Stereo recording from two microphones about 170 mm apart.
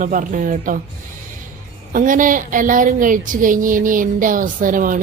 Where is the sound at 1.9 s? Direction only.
50° right (ahead or behind).